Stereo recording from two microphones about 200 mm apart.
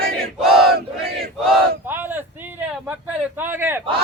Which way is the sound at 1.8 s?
10° right (ahead or behind).